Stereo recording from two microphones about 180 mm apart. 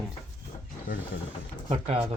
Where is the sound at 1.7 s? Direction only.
35° right (ahead or behind).